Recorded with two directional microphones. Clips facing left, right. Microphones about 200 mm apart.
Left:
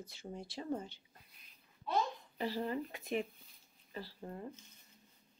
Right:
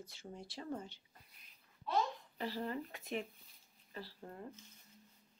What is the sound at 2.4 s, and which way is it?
Speech, 10° left (ahead or behind).